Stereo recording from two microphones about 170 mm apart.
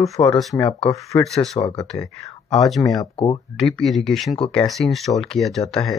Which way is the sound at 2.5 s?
Centre (ahead or behind).